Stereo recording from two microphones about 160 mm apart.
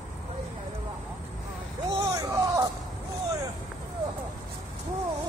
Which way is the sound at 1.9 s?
20° right (ahead or behind).